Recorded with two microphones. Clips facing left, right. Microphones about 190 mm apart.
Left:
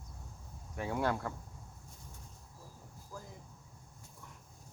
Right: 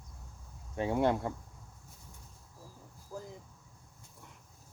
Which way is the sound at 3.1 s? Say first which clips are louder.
Right 5 dB; 25° right (ahead or behind).